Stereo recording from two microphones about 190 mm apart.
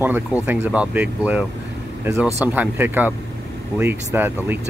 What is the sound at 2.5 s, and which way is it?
Speech, 10° right (ahead or behind).